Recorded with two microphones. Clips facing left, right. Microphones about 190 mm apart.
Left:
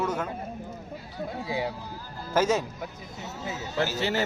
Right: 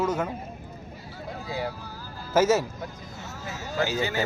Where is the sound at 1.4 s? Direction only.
20° left (ahead or behind).